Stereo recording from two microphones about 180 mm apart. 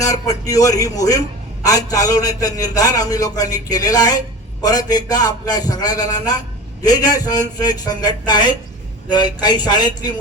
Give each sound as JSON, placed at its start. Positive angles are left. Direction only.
{"t": 0.0, "sound": "a man's voice", "side_deg": 20}